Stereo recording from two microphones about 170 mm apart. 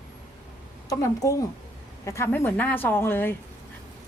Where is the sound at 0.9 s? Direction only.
20° left (ahead or behind).